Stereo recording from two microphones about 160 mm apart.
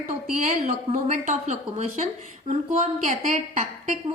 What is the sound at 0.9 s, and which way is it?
A woman's voice, 45° right (ahead or behind).